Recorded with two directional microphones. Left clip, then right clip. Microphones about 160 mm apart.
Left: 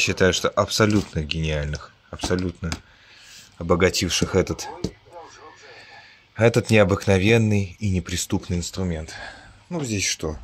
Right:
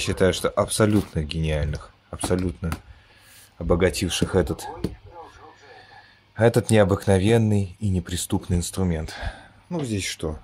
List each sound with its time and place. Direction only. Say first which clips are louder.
0.0 s speech: left 2 dB; 5° right (ahead or behind)
3.5 s speech: left 2 dB; centre (ahead or behind)
6.3 s speech: left 1 dB; 5° right (ahead or behind)
8.5 s speech: right 1 dB; 25° right (ahead or behind)
9.3 s a sound: even; 15° right (ahead or behind)
9.8 s speech: left 3 dB; centre (ahead or behind)